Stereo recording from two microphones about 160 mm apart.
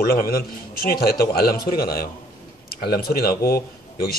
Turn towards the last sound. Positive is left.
turn(degrees=70)  # may be behind; listen again after turning